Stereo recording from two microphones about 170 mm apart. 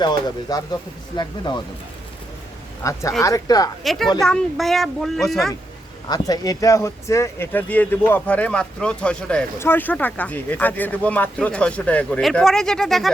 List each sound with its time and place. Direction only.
0.0 s speech: 25° left (ahead or behind)
2.8 s speech: 20° left (ahead or behind)
3.8 s speech: centre (ahead or behind)
6.1 s speech: 20° left (ahead or behind); by 13.1 s centre (ahead or behind)